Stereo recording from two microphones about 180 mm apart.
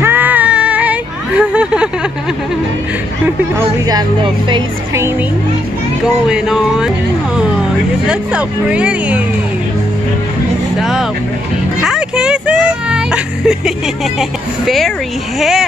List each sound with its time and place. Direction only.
0.0 s a sound: 10° right (ahead or behind)
3.3 s a woman's voice: 20° right (ahead or behind)
6.2 s speech: 5° right (ahead or behind)
8.1 s speech: 5° right (ahead or behind)
10.8 s speech: centre (ahead or behind)
11.8 s vehicle: 5° right (ahead or behind)
15.3 s speech: centre (ahead or behind)